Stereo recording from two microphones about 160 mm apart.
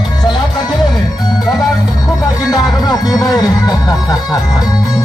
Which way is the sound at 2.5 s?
25° left (ahead or behind).